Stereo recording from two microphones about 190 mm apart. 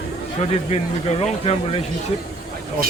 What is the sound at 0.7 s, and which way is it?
Speech, 35° left (ahead or behind).